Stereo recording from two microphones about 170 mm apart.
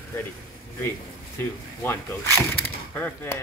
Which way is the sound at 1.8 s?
15° left (ahead or behind).